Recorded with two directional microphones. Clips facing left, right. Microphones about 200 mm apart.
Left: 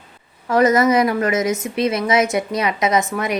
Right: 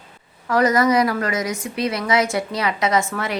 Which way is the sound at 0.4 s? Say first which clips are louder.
Left 3 dB; 20° left (ahead or behind).